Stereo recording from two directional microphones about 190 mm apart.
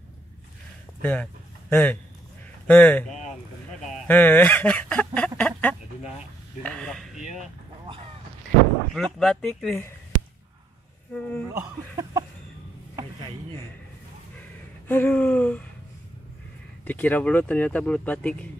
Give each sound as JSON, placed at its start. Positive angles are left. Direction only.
{"t": 1.0, "sound": "a man's voice", "side_deg": 10}
{"t": 4.1, "sound": "speech", "side_deg": 10}
{"t": 8.9, "sound": "speech", "side_deg": 0}
{"t": 11.1, "sound": "speech", "side_deg": 5}
{"t": 11.5, "sound": "speech", "side_deg": -15}
{"t": 14.9, "sound": "speech", "side_deg": 10}
{"t": 16.8, "sound": "speech", "side_deg": 10}